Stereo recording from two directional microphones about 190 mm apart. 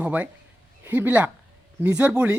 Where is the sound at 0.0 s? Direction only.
10° right (ahead or behind).